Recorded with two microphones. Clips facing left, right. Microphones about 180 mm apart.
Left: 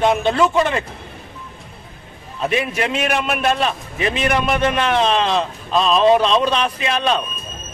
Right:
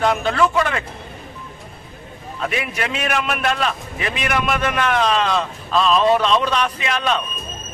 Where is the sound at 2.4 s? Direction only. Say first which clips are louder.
Left 4 dB; 25° left (ahead or behind).